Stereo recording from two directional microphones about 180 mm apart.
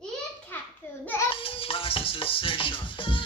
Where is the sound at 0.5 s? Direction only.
10° left (ahead or behind).